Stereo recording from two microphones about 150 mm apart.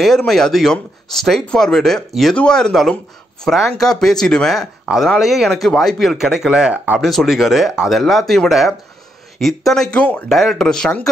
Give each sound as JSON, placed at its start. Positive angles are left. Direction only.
{"t": 0.0, "sound": "speech", "side_deg": 0}